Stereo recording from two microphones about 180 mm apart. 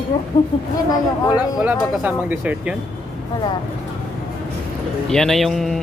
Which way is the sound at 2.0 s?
10° right (ahead or behind).